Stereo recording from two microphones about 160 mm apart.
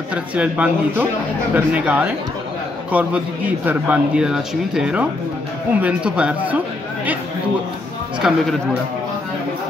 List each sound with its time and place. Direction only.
0.1 s a man's voice: 5° right (ahead or behind)
8.2 s speech: 5° right (ahead or behind)